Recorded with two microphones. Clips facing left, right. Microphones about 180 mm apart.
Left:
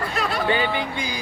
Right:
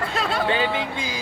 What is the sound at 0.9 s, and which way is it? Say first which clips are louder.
Speech: left 1 dB; 25° right (ahead or behind).